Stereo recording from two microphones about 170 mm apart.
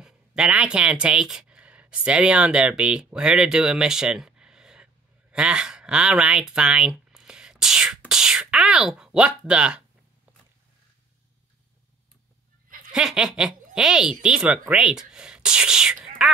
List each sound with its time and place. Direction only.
0.0 s speech: 5° right (ahead or behind)
12.6 s a sound: 50° right (ahead or behind)
12.9 s speech: 5° right (ahead or behind)